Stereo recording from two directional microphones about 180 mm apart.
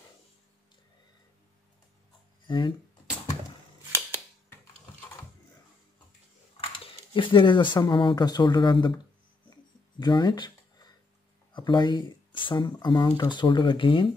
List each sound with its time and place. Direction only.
2.4 s speech: 25° left (ahead or behind)
7.2 s speech: 30° left (ahead or behind)
9.9 s speech: 25° left (ahead or behind)
11.5 s speech: 25° left (ahead or behind)